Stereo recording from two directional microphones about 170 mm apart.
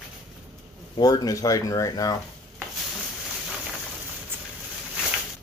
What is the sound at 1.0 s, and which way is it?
Speech, 25° left (ahead or behind).